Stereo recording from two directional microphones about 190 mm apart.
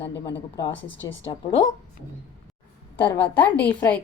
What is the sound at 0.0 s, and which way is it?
Speech, 15° left (ahead or behind).